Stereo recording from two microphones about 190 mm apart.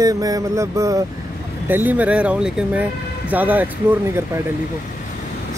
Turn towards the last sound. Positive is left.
turn(degrees=-10)  # may be behind; listen again after turning